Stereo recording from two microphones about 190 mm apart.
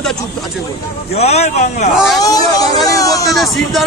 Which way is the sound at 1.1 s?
35° left (ahead or behind).